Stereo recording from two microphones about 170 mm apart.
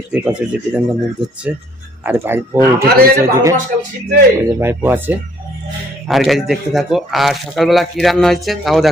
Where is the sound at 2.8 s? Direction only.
65° right (ahead or behind).